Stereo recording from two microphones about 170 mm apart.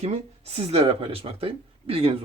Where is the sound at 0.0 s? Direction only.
35° right (ahead or behind).